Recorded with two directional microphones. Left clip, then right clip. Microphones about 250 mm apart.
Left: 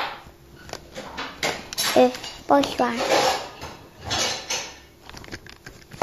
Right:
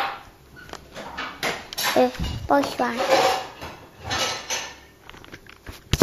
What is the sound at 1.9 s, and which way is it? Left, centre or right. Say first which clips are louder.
Speech: left 3 dB; centre.